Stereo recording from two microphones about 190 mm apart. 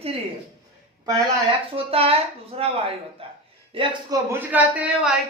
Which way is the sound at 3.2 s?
30° right (ahead or behind).